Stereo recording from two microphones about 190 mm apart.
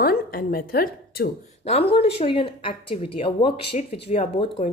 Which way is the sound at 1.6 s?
30° left (ahead or behind).